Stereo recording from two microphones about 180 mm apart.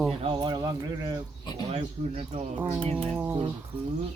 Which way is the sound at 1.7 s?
35° right (ahead or behind).